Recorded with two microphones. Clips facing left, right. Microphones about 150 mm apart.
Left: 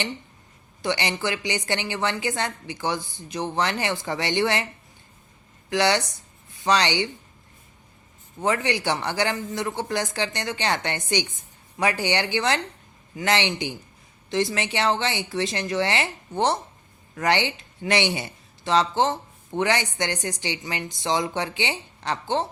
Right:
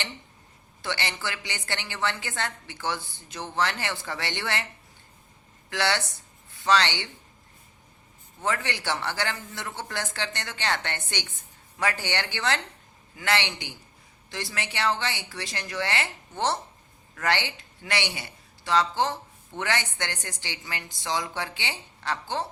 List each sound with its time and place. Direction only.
0.8 s a woman's voice: 15° left (ahead or behind)
5.7 s a woman's voice: 15° left (ahead or behind)
8.4 s a woman's voice: 15° left (ahead or behind)